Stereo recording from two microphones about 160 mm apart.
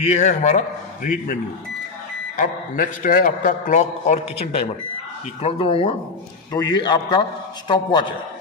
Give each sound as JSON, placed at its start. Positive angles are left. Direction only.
{"t": 0.0, "sound": "a man's voice", "side_deg": 45}
{"t": 5.4, "sound": "a man's voice", "side_deg": 35}